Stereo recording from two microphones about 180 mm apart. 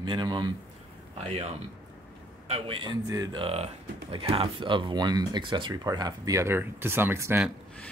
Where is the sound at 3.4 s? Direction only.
35° right (ahead or behind); by 7.5 s 10° right (ahead or behind).